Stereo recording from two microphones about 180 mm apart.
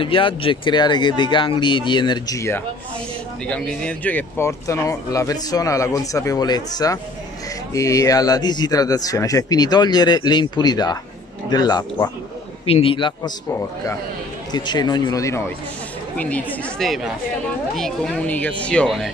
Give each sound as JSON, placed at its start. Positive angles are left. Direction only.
{"t": 0.0, "sound": "speech", "side_deg": 30}
{"t": 3.4, "sound": "speech", "side_deg": 5}
{"t": 14.5, "sound": "speech", "side_deg": 25}